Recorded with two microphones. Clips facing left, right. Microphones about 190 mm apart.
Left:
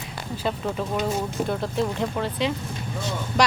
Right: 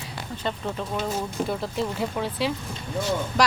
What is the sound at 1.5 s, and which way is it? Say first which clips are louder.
Speech: left 2 dB; centre (ahead or behind).